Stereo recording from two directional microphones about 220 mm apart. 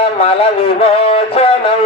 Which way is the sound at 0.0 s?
25° left (ahead or behind).